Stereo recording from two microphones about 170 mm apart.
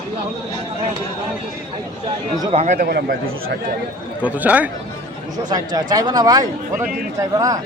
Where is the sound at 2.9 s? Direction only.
70° right (ahead or behind).